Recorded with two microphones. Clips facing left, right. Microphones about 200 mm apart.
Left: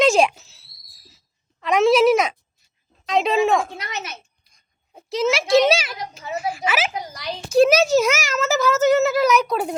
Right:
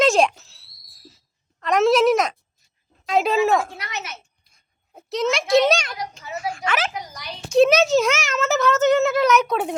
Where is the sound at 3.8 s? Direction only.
20° left (ahead or behind).